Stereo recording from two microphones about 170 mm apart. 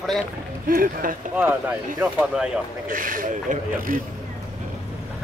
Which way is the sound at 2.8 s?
55° right (ahead or behind).